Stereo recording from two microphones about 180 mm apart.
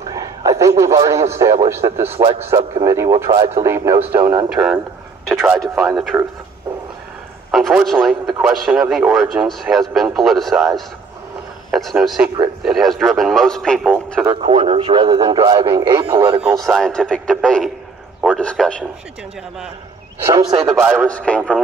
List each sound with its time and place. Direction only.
0.1 s a man's voice: 20° right (ahead or behind); by 5.6 s centre (ahead or behind)
5.6 s a man's voice: 15° right (ahead or behind)
7.5 s speech: centre (ahead or behind)
11.7 s speech: centre (ahead or behind)
14.2 s speech: 30° right (ahead or behind)
16.4 s speech: centre (ahead or behind)
20.4 s speech: 25° right (ahead or behind)
20.8 s a man's voice: 5° right (ahead or behind)
21.1 s speech: 5° left (ahead or behind)